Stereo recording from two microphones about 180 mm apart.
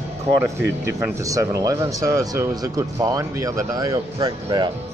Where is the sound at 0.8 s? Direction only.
15° right (ahead or behind).